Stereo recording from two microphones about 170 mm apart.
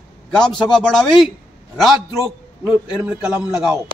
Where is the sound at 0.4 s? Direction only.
5° left (ahead or behind).